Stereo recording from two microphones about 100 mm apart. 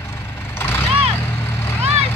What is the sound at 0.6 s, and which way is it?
Vehicle, 25° left (ahead or behind).